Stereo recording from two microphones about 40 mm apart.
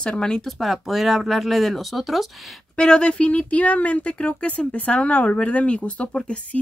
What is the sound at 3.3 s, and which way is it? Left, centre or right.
Speech, left.